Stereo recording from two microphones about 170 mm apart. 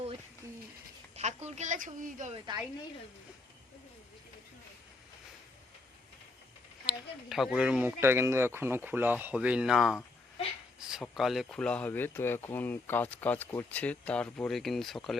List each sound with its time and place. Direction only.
1.1 s a woman's voice: 40° right (ahead or behind)
6.8 s speech: centre (ahead or behind)